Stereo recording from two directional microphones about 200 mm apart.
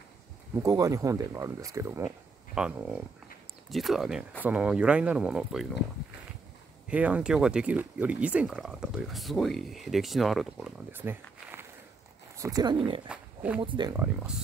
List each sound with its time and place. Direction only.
0.6 s speech: 15° right (ahead or behind)
6.9 s speech: 5° right (ahead or behind); by 13.0 s 25° right (ahead or behind)
13.1 s roaring cats: 5° right (ahead or behind)
13.6 s speech: 25° right (ahead or behind)